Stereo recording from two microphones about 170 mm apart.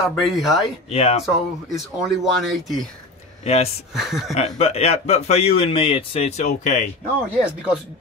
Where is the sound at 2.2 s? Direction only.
Centre (ahead or behind).